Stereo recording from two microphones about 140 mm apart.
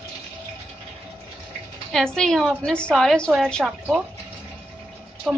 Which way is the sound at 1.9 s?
5° left (ahead or behind).